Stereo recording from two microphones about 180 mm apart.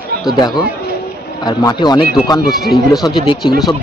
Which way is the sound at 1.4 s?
20° left (ahead or behind).